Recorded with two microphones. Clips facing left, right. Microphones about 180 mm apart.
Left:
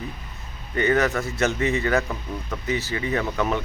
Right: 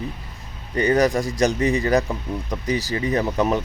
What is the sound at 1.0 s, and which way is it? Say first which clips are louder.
Speech: right 5 dB; 15° right (ahead or behind).